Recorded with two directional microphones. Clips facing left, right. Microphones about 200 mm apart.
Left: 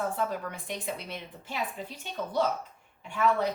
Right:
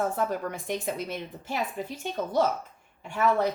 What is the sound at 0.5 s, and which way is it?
A woman's voice, 45° right (ahead or behind).